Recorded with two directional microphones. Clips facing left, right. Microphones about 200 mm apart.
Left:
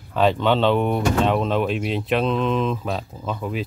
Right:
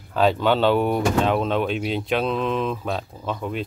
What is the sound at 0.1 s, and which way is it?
Speech, centre (ahead or behind).